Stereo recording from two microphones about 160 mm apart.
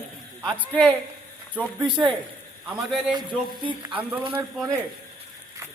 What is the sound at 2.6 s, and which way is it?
Speech, 5° right (ahead or behind).